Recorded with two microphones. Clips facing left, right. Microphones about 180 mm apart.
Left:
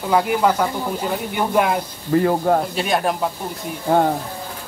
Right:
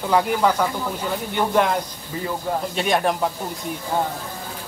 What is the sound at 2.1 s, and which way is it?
Speech, 60° left (ahead or behind).